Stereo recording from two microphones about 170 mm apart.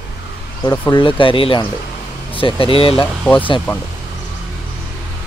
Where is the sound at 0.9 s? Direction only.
30° left (ahead or behind).